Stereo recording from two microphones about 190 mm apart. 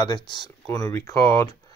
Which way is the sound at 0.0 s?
20° left (ahead or behind).